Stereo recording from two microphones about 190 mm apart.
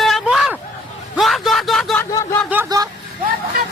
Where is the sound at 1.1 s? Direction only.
Centre (ahead or behind).